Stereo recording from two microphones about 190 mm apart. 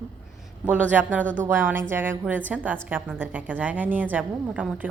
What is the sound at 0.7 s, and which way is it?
A woman's voice, 10° right (ahead or behind).